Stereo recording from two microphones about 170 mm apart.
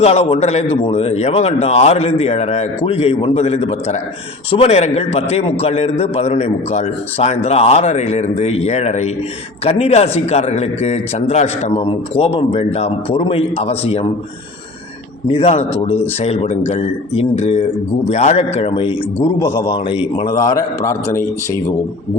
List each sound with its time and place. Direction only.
0.0 s speech: 35° left (ahead or behind)
15.3 s speech: 35° left (ahead or behind)
20.6 s a man's voice: 15° left (ahead or behind)